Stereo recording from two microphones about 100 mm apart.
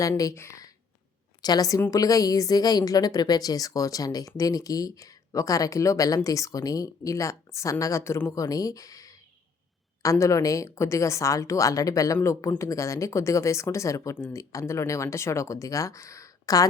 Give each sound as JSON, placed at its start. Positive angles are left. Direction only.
{"t": 0.2, "sound": "speech", "side_deg": 30}
{"t": 1.4, "sound": "a woman's voice", "side_deg": 40}